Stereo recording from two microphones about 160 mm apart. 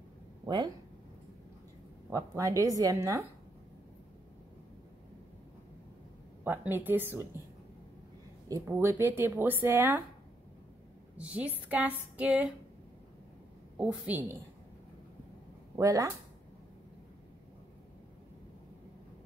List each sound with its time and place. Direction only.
2.0 s speech: 20° right (ahead or behind)
6.4 s speech: 10° right (ahead or behind)
8.5 s speech: 20° right (ahead or behind)
11.1 s speech: 10° right (ahead or behind)
13.7 s speech: 10° right (ahead or behind)
15.7 s speech: 20° right (ahead or behind)